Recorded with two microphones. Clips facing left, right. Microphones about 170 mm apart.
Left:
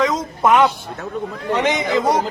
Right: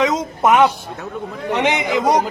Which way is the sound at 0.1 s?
20° right (ahead or behind).